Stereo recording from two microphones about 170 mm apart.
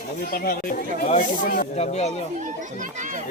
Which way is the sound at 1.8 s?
40° left (ahead or behind).